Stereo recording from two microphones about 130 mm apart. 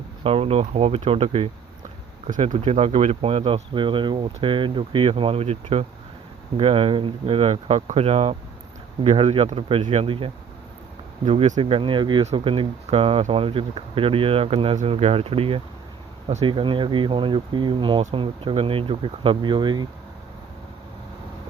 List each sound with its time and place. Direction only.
0.3 s speech: 50° right (ahead or behind)
2.6 s speech: 50° right (ahead or behind)
9.8 s speech: 60° right (ahead or behind)
10.1 s speech: 45° right (ahead or behind)
11.3 s speech: 60° right (ahead or behind)
11.6 s speech: 45° right (ahead or behind)